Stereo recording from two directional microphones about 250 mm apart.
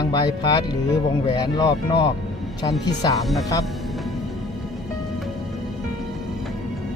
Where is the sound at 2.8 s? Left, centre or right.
Centre.